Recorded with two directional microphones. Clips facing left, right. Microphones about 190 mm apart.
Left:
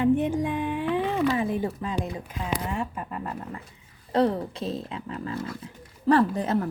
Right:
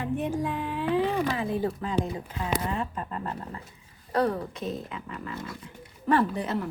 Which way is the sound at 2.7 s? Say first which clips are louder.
Left 1 dB; 10° left (ahead or behind).